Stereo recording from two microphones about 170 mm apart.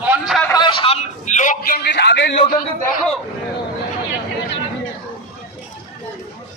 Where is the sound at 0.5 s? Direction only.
30° left (ahead or behind).